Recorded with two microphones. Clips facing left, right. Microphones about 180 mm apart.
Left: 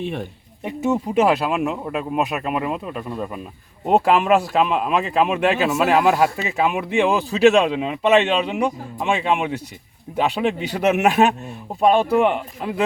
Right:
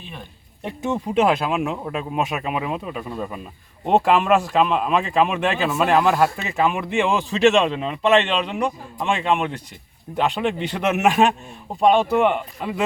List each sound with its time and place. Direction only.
0.0 s speech: 70° left (ahead or behind)
0.6 s speech: 5° left (ahead or behind)